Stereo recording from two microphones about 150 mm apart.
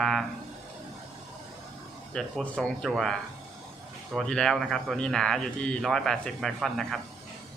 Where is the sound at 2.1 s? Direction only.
5° left (ahead or behind).